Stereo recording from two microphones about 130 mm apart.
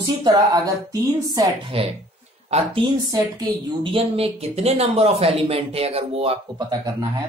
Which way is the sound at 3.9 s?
50° right (ahead or behind).